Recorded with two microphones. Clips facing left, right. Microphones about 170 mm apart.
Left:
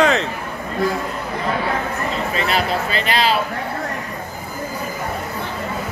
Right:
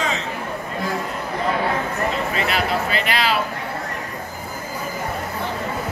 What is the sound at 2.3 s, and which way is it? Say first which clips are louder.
Speech: left 2 dB; 30° left (ahead or behind).